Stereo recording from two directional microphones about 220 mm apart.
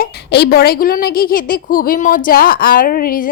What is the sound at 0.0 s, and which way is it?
A woman's voice, 45° left (ahead or behind).